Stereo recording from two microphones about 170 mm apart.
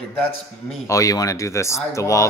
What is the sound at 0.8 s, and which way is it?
A man's voice, 20° left (ahead or behind).